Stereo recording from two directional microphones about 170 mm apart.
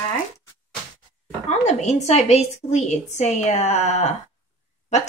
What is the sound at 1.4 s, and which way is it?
A woman's voice, 40° left (ahead or behind).